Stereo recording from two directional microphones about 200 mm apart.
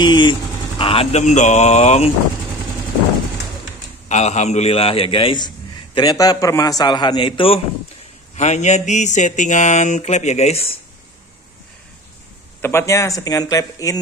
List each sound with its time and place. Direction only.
0.0 s speech: 25° left (ahead or behind)
4.1 s a man's voice: 35° left (ahead or behind)
12.6 s speech: 15° left (ahead or behind)